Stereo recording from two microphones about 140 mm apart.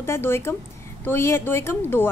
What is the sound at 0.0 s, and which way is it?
A woman's voice, 15° left (ahead or behind).